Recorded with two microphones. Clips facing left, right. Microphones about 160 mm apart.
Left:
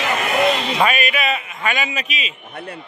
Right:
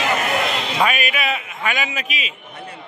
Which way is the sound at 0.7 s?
Centre (ahead or behind).